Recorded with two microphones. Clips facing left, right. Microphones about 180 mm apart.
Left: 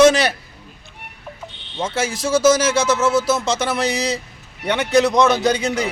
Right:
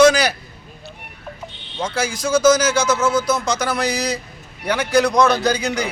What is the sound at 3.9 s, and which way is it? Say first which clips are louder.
Speech: left 1 dB; centre (ahead or behind).